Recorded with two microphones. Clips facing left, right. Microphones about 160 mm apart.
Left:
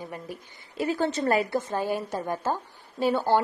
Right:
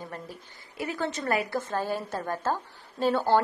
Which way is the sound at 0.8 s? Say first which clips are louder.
Left 5 dB; 30° left (ahead or behind).